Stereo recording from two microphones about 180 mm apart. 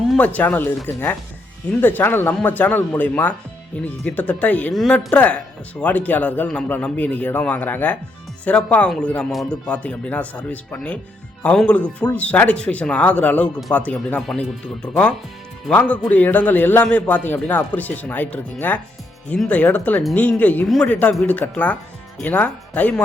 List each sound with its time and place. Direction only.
0.3 s a man's voice: 10° left (ahead or behind)